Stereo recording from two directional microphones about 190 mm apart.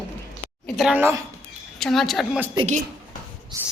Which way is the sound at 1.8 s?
Centre (ahead or behind).